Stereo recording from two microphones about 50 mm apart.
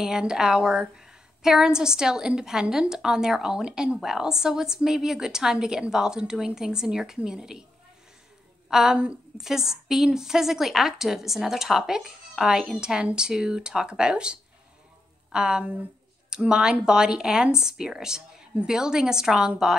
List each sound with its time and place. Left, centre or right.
0.0 s a woman's voice: centre
8.6 s a woman's voice: centre
8.9 s a woman's voice: right
9.4 s a woman's voice: centre